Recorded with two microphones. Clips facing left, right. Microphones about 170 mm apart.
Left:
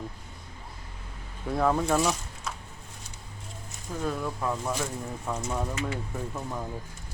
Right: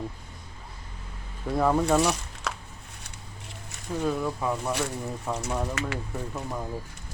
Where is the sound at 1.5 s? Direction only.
Centre (ahead or behind).